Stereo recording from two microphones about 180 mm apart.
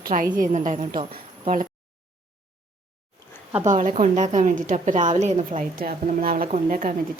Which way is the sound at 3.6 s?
45° right (ahead or behind).